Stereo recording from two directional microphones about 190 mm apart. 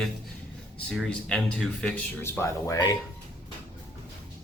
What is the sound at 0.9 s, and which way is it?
Speech, 5° left (ahead or behind).